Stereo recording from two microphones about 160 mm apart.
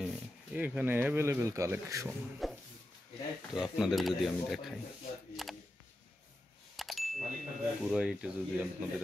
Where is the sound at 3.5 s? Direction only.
5° right (ahead or behind).